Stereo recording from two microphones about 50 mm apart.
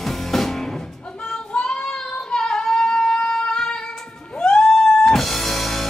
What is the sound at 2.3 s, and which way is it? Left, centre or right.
Singing, centre.